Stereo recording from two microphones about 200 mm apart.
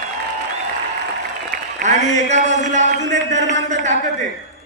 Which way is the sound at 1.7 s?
35° right (ahead or behind).